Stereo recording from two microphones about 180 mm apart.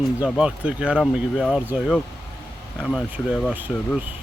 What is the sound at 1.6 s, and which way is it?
A man's voice, 5° right (ahead or behind).